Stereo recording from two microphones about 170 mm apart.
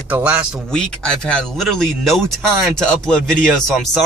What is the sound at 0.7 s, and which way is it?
Speech, 5° left (ahead or behind).